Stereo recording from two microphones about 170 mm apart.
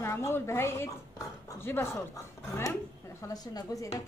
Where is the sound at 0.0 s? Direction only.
15° left (ahead or behind).